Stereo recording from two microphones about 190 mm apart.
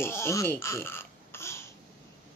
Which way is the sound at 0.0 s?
15° left (ahead or behind).